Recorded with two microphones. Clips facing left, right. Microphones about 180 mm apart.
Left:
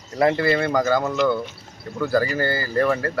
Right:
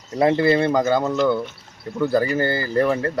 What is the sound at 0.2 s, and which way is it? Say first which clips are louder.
Speech: right 2 dB; 25° right (ahead or behind).